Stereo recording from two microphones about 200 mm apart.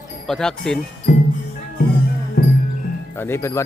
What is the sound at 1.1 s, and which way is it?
Music, 40° left (ahead or behind).